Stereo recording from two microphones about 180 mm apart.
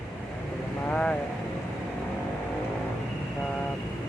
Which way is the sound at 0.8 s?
5° left (ahead or behind).